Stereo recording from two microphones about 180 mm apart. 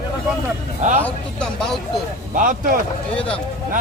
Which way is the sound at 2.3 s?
45° right (ahead or behind).